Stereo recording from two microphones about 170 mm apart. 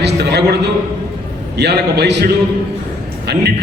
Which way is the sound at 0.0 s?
80° right.